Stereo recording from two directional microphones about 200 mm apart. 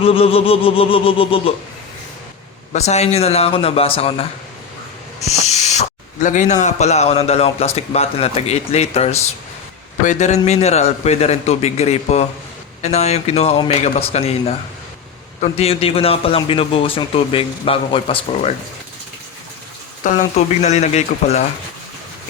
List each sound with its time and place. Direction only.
0.0 s a man's voice: 30° left (ahead or behind)
2.7 s a man's voice: 35° left (ahead or behind)
5.2 s owl: 35° left (ahead or behind)
6.2 s a man's voice: 40° left (ahead or behind)
20.3 s a man's voice: 35° left (ahead or behind)